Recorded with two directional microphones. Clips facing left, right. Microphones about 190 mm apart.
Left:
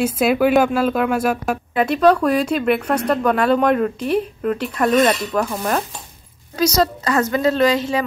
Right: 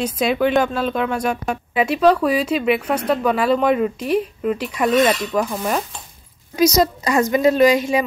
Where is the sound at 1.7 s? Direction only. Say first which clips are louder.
Left 1 dB; 5° right (ahead or behind).